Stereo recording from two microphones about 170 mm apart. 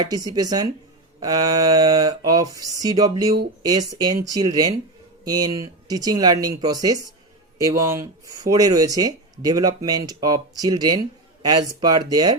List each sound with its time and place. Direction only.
0.0 s speech: 25° right (ahead or behind)